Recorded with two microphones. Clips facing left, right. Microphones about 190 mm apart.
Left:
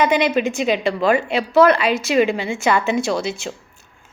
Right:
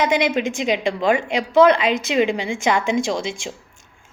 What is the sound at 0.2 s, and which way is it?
A woman's voice, 15° right (ahead or behind).